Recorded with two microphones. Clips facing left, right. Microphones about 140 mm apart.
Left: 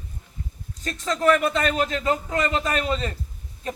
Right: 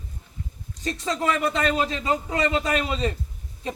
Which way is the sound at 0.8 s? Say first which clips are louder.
Left 4 dB; 15° right (ahead or behind).